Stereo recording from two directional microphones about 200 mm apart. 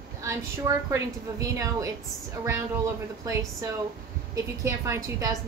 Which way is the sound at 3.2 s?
15° right (ahead or behind).